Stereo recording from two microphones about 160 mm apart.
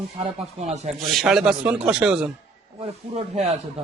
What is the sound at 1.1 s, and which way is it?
Speech, centre (ahead or behind).